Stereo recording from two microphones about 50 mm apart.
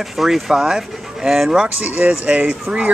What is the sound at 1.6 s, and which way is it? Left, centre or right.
Speech, right.